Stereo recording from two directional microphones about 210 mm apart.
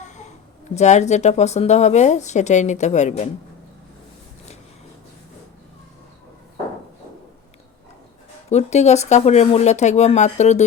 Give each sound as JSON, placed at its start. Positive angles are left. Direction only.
{"t": 0.0, "sound": "a sound", "side_deg": 35}
{"t": 0.8, "sound": "speech", "side_deg": 35}
{"t": 8.4, "sound": "speech", "side_deg": 30}